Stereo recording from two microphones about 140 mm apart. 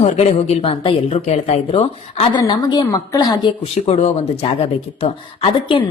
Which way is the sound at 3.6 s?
50° left (ahead or behind).